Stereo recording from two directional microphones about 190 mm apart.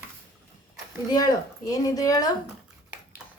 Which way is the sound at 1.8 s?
20° left (ahead or behind).